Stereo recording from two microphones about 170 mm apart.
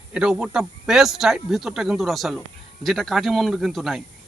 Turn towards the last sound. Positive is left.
turn(degrees=0)  # may be behind; listen again after turning